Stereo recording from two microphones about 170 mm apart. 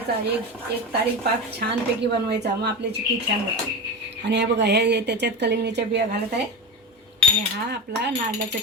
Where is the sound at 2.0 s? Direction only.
75° right (ahead or behind).